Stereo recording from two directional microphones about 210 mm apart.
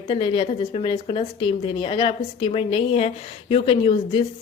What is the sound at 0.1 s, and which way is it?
A woman's voice, 25° left (ahead or behind).